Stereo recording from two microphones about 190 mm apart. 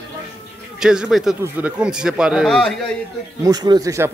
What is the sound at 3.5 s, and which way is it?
Speech, 20° right (ahead or behind).